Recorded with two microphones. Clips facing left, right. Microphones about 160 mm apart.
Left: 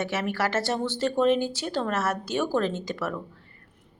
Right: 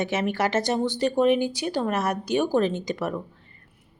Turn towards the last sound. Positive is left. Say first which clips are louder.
# right 3 dB
turn(degrees=-15)  # may be behind; listen again after turning